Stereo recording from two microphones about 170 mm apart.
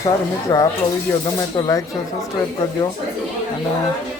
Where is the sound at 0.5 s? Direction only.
25° left (ahead or behind).